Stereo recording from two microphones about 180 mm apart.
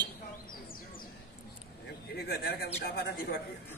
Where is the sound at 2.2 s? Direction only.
60° left (ahead or behind).